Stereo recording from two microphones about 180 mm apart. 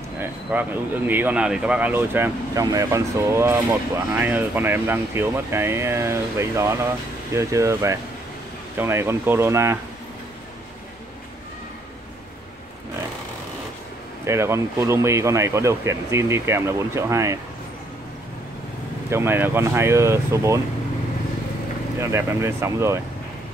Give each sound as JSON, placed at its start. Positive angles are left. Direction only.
{"t": 0.2, "sound": "speech", "side_deg": -10}
{"t": 14.2, "sound": "speech", "side_deg": -15}
{"t": 19.0, "sound": "speech", "side_deg": -15}
{"t": 22.0, "sound": "speech", "side_deg": -15}